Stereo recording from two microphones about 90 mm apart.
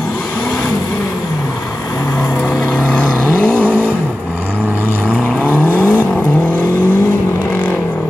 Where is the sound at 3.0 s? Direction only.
15° right (ahead or behind).